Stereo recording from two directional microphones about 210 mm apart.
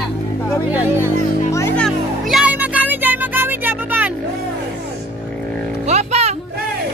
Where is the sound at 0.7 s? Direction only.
10° right (ahead or behind).